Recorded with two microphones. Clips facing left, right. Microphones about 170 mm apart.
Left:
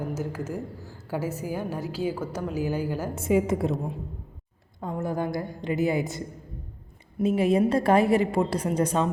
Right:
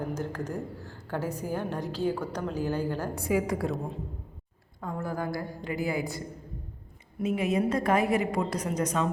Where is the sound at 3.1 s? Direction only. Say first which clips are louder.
Left 6 dB; 25° left (ahead or behind).